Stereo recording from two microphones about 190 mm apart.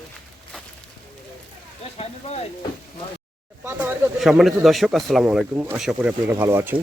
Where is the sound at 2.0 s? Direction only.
35° left (ahead or behind).